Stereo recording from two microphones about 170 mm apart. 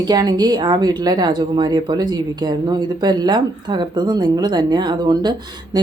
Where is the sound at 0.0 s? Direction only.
25° right (ahead or behind).